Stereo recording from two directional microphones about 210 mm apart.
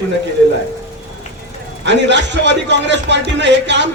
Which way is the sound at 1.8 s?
55° right (ahead or behind).